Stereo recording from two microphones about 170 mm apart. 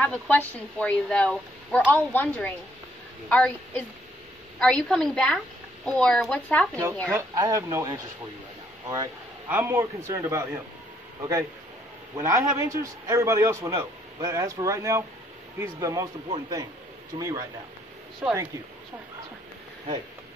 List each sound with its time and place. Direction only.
0.0 s speech: 10° left (ahead or behind)
7.1 s a man's voice: 15° right (ahead or behind)
12.2 s a man's voice: 15° right (ahead or behind)
18.2 s speech: 5° right (ahead or behind)